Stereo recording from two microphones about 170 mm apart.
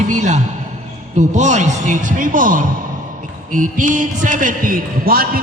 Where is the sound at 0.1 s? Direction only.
45° right (ahead or behind).